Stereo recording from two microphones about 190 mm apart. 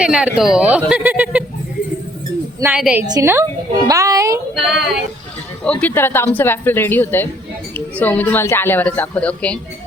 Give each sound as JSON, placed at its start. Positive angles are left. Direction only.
{"t": 0.0, "sound": "speech", "side_deg": -5}
{"t": 2.6, "sound": "speech", "side_deg": -10}
{"t": 4.5, "sound": "speech", "side_deg": 0}